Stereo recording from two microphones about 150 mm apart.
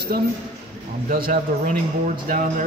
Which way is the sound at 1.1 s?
70° right (ahead or behind).